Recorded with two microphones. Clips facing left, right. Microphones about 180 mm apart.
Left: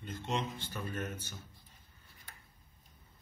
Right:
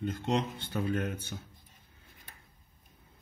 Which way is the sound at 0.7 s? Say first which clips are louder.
Right 11 dB; 65° right (ahead or behind).